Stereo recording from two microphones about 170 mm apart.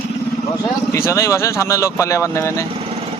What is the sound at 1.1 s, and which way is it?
Speech, 15° left (ahead or behind).